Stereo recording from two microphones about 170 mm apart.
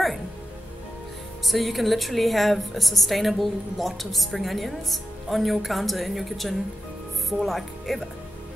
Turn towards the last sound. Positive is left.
turn(degrees=0)  # may be behind; listen again after turning